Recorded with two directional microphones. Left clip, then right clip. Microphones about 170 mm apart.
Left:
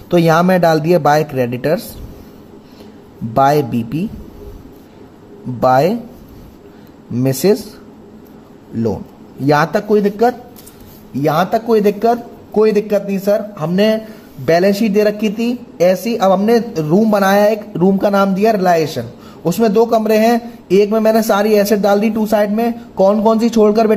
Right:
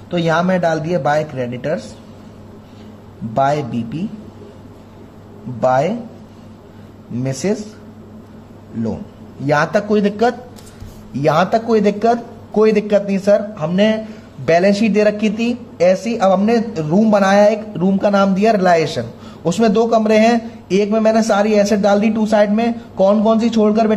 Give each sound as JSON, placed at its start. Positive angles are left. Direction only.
{"t": 0.1, "sound": "speech", "side_deg": 65}
{"t": 3.3, "sound": "speech", "side_deg": 60}
{"t": 5.6, "sound": "speech", "side_deg": 60}
{"t": 7.2, "sound": "speech", "side_deg": 60}
{"t": 9.5, "sound": "a man's voice", "side_deg": 45}